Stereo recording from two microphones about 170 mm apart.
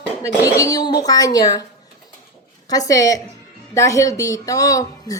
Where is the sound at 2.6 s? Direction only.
20° left (ahead or behind).